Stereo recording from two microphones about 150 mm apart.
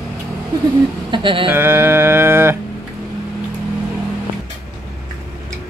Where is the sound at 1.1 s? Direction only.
35° right (ahead or behind).